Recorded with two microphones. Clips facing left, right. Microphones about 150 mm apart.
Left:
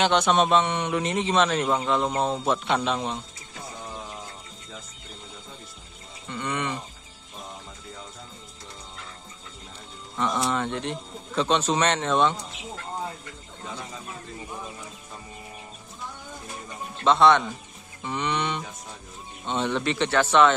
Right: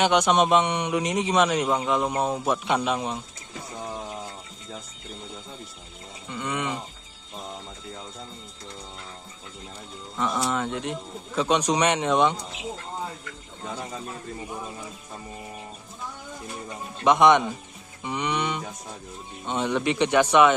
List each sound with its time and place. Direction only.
0.0 s a man's voice: 15° right (ahead or behind)
6.2 s a man's voice: 10° right (ahead or behind)
10.1 s a man's voice: 5° right (ahead or behind)
17.0 s a man's voice: 15° right (ahead or behind)